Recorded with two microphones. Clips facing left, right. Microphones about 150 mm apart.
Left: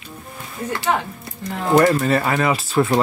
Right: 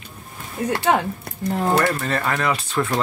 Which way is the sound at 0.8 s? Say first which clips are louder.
Right 2 dB; 55° right (ahead or behind).